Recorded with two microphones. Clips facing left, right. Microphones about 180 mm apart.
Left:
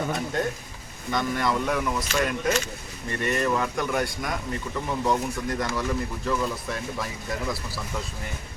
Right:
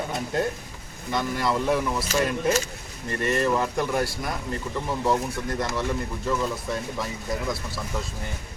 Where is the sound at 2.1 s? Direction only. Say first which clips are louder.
Right 2 dB; 40° right (ahead or behind).